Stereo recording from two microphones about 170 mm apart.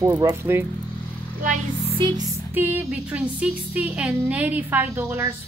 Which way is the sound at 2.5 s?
10° right (ahead or behind).